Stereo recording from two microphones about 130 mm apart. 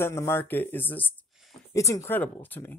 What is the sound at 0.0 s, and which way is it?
Speech, 20° left (ahead or behind).